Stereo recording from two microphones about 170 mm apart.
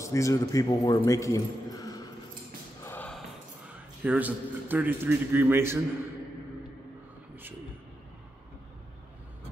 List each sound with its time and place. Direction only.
0.0 s a man's voice: 20° left (ahead or behind)
2.8 s a sound: 10° left (ahead or behind)
4.0 s a man's voice: 10° right (ahead or behind)